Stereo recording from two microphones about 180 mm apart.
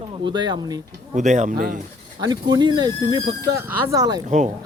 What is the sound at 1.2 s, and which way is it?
Speech, 40° right (ahead or behind).